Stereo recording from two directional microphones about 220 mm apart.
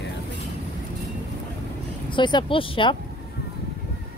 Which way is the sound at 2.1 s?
20° left (ahead or behind).